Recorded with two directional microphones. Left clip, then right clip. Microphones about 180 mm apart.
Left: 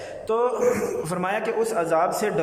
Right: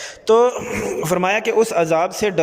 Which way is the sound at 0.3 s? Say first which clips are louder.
Right 9 dB; 20° right (ahead or behind).